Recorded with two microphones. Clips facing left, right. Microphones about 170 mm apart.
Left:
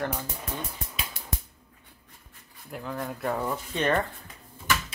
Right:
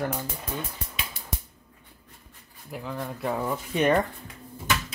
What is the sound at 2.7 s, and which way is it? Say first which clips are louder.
Speech: even; centre (ahead or behind).